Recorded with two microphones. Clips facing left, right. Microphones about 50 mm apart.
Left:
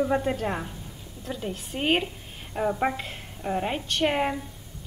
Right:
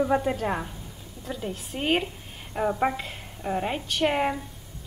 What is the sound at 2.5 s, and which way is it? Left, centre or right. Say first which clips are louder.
A woman's voice: right 1 dB; centre.